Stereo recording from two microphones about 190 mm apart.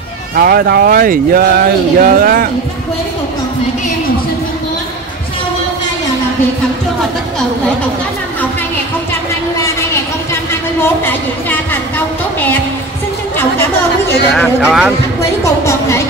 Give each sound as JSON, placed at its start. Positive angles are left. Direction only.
{"t": 0.4, "sound": "speech", "side_deg": -50}
{"t": 10.8, "sound": "a woman's voice", "side_deg": 10}
{"t": 13.4, "sound": "a woman's voice", "side_deg": 10}
{"t": 14.6, "sound": "a man's voice", "side_deg": -5}
{"t": 15.4, "sound": "a woman's voice", "side_deg": 15}